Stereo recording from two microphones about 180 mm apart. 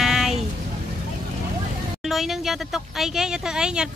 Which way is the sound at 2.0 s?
Centre (ahead or behind).